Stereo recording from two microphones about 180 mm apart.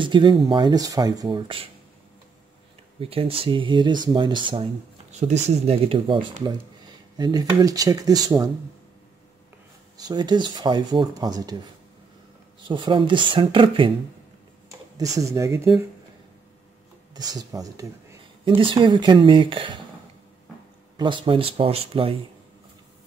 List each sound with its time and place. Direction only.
0.0 s speech: 25° right (ahead or behind)
3.0 s speech: 30° right (ahead or behind)
9.9 s speech: 20° right (ahead or behind)
12.6 s speech: 25° right (ahead or behind)
15.0 s speech: 20° right (ahead or behind)
17.1 s speech: 20° right (ahead or behind)
21.0 s speech: 30° right (ahead or behind)